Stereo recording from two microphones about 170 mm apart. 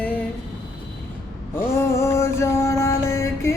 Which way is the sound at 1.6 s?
15° left (ahead or behind).